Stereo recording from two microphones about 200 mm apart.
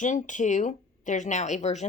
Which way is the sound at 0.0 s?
40° left (ahead or behind).